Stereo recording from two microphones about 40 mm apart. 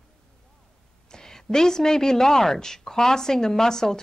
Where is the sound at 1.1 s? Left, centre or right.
Centre.